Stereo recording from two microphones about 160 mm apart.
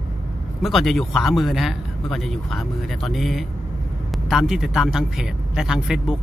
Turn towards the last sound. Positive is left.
turn(degrees=-5)  # may be behind; listen again after turning